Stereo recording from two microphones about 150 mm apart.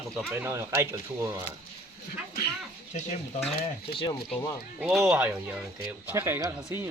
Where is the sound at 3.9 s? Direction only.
30° left (ahead or behind).